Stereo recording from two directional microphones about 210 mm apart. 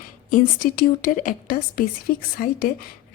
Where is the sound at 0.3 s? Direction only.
40° left (ahead or behind).